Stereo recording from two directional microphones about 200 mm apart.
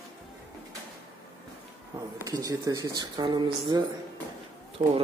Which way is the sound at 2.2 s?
20° right (ahead or behind).